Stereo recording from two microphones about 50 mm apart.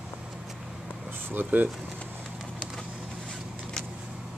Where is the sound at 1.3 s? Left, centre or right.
Right.